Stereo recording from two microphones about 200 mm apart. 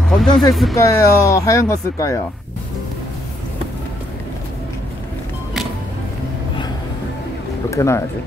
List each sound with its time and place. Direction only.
0.0 s speech: centre (ahead or behind)
0.7 s speech: 15° left (ahead or behind)
7.7 s speech: 15° left (ahead or behind)